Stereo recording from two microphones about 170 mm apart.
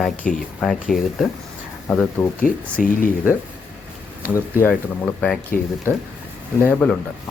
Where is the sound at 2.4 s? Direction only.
55° left (ahead or behind).